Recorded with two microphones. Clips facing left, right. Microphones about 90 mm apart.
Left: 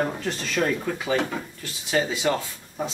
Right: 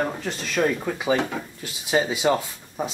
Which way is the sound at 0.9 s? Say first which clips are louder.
Right 2 dB; 15° right (ahead or behind).